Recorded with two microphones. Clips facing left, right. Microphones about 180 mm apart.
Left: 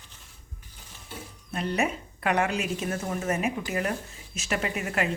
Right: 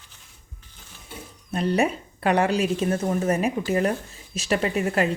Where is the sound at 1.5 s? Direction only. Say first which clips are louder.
Right 5 dB; 35° right (ahead or behind).